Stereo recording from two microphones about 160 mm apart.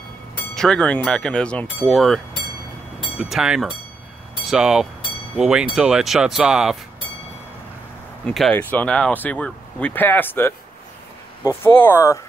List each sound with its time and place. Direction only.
0.6 s speech: 5° left (ahead or behind)
8.3 s speech: 5° left (ahead or behind)